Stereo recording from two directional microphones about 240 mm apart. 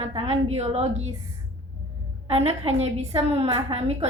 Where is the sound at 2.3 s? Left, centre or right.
Right.